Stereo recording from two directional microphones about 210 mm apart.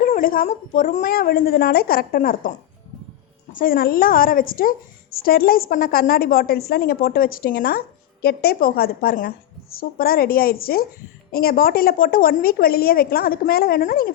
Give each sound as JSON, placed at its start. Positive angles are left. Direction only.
{"t": 0.0, "sound": "a woman's voice", "side_deg": 40}
{"t": 3.5, "sound": "a woman's voice", "side_deg": 40}